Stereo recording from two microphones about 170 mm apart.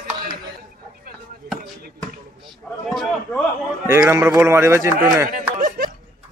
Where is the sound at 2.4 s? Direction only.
Centre (ahead or behind).